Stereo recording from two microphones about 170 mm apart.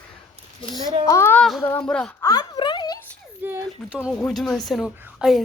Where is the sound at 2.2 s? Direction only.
25° left (ahead or behind).